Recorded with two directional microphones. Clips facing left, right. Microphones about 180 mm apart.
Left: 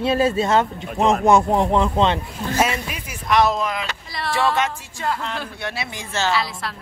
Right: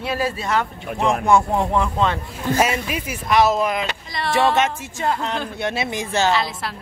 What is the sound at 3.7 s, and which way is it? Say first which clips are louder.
Speech: right 4 dB; 20° right (ahead or behind).